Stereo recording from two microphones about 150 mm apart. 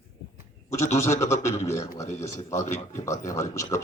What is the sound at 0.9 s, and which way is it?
Speech, 20° left (ahead or behind).